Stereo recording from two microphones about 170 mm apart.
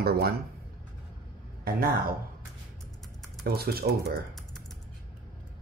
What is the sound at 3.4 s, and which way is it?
Speech, 65° right (ahead or behind).